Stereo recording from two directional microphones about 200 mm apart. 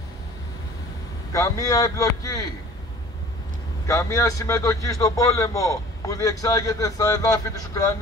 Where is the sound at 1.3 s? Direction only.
15° left (ahead or behind).